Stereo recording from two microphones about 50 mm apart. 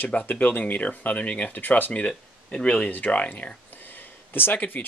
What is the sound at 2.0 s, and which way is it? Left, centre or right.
Speech, centre.